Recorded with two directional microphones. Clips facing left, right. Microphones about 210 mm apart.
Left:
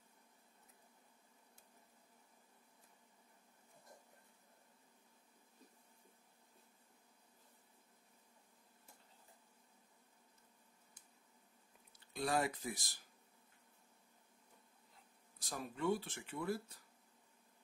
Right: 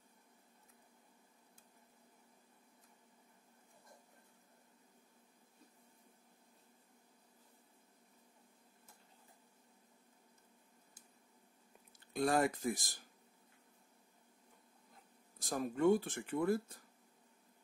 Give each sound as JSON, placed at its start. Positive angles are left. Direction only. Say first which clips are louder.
{"t": 12.1, "sound": "speech", "louder": "right 5 dB", "side_deg": -50}
{"t": 15.3, "sound": "speech", "louder": "right 8 dB", "side_deg": -45}